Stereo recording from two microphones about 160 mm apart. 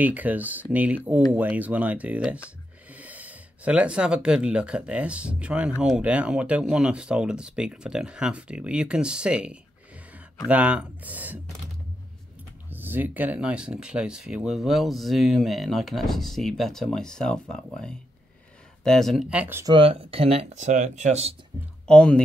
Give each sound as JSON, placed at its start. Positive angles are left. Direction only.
{"t": 0.0, "sound": "speech", "side_deg": -10}
{"t": 12.6, "sound": "speech", "side_deg": -10}
{"t": 19.6, "sound": "speech", "side_deg": -30}
{"t": 21.8, "sound": "speech", "side_deg": 5}